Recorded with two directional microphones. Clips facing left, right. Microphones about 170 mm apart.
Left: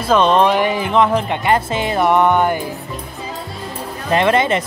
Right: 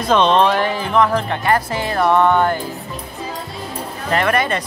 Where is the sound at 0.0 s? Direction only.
5° left (ahead or behind).